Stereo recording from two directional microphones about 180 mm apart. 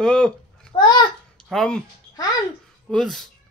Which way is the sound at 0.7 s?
25° left (ahead or behind).